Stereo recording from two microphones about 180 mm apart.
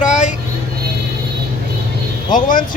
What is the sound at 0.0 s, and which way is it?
Music, 40° left (ahead or behind).